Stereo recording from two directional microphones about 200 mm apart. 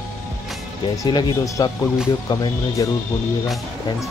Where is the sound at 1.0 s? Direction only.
20° left (ahead or behind).